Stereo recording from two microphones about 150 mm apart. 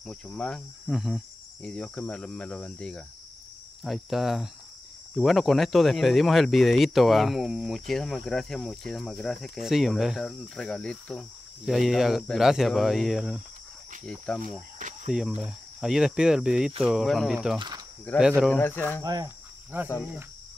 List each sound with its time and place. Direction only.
0.0 s speech: 5° left (ahead or behind)
14.8 s cricket: 55° right (ahead or behind)
15.1 s speech: 5° right (ahead or behind)
17.6 s cricket: 30° right (ahead or behind)
18.1 s speech: 10° left (ahead or behind)
19.0 s cricket: 25° right (ahead or behind)
19.7 s cricket: 15° right (ahead or behind)